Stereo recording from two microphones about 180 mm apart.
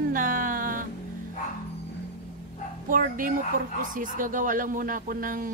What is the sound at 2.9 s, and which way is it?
Speech, 50° right (ahead or behind).